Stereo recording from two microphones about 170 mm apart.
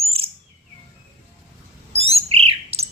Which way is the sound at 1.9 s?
35° right (ahead or behind).